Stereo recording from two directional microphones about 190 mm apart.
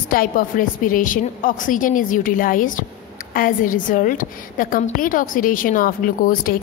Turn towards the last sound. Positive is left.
turn(degrees=45)  # may be behind; listen again after turning